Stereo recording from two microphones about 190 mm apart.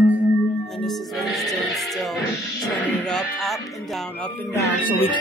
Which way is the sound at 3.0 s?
Centre (ahead or behind).